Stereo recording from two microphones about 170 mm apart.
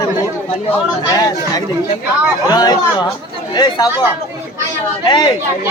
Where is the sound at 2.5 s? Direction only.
25° left (ahead or behind).